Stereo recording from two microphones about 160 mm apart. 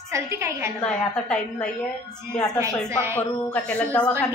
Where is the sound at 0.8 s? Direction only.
10° left (ahead or behind).